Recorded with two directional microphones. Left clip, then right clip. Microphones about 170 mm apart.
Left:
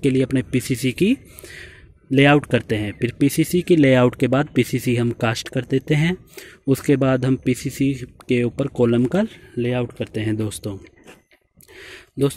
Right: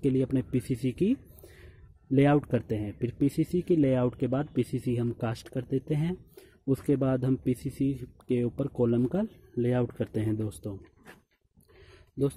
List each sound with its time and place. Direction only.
0.0 s speech: 5° right (ahead or behind)
9.6 s speech: 25° right (ahead or behind)
10.2 s speech: 5° right (ahead or behind)